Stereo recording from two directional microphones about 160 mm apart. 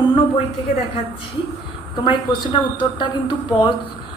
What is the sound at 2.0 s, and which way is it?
A woman's voice, 30° left (ahead or behind).